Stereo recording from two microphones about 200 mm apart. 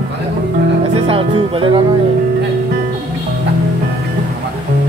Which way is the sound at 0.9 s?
30° right (ahead or behind).